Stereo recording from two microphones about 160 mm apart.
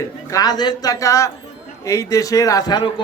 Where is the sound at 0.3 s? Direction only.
25° left (ahead or behind).